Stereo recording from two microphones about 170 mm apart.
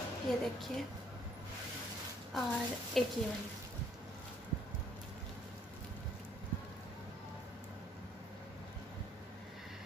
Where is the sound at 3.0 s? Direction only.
Centre (ahead or behind).